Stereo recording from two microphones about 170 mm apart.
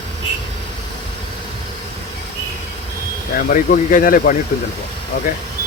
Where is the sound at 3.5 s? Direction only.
50° left (ahead or behind).